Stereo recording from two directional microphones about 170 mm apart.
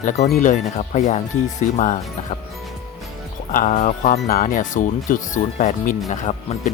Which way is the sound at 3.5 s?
50° left (ahead or behind).